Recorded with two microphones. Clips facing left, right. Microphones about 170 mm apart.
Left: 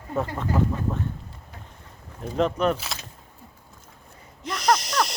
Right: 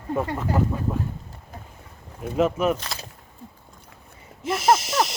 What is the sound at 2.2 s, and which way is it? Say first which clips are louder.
Speech: right 1 dB; 5° right (ahead or behind).